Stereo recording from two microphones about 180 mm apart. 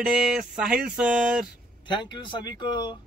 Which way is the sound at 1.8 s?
25° left (ahead or behind).